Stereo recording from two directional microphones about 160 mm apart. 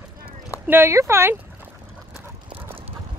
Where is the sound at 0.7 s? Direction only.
15° right (ahead or behind).